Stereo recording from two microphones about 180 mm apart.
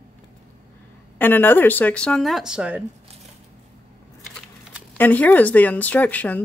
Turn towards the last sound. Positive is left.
turn(degrees=10)  # may be behind; listen again after turning